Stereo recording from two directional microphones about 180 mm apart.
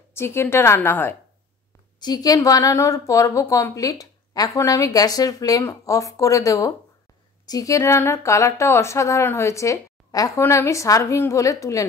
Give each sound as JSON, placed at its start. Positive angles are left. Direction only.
{"t": 0.1, "sound": "speech", "side_deg": 15}
{"t": 2.0, "sound": "speech", "side_deg": 20}